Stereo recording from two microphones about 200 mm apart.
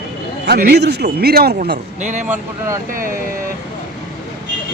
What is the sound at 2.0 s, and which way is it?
Speech, 40° right (ahead or behind).